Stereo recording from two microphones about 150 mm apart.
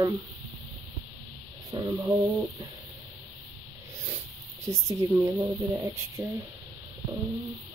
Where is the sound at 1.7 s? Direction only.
25° right (ahead or behind).